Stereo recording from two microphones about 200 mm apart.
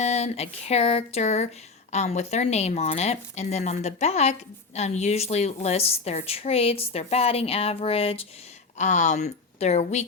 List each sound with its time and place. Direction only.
0.0 s speech: 30° left (ahead or behind)